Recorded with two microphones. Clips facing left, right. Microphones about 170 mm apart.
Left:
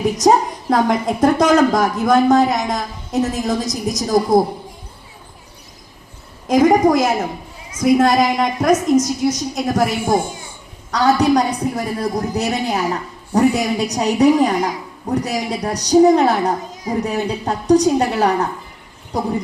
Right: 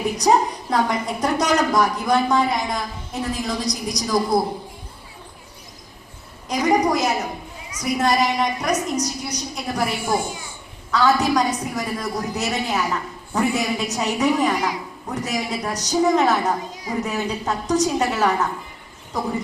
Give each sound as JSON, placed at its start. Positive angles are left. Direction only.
{"t": 0.2, "sound": "a woman's voice", "side_deg": 45}
{"t": 6.5, "sound": "a woman's voice", "side_deg": 50}